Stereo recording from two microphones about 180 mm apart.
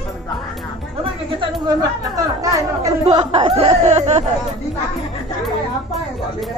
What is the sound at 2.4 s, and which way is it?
Speech, 15° right (ahead or behind).